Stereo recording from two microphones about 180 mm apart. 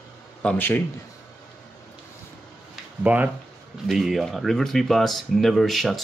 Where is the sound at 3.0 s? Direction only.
10° right (ahead or behind).